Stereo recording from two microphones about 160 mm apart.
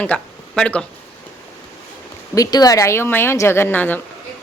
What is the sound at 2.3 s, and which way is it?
A woman's voice, 25° left (ahead or behind).